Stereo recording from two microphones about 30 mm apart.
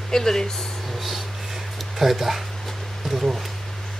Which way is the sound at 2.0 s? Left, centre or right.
Centre.